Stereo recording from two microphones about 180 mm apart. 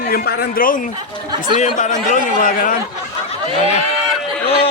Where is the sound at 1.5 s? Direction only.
45° left (ahead or behind).